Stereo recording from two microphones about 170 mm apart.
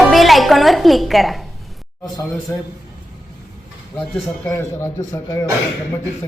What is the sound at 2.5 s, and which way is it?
Speech, 15° left (ahead or behind).